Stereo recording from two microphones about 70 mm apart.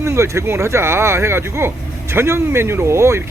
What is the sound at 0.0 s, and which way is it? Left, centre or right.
Speech, right.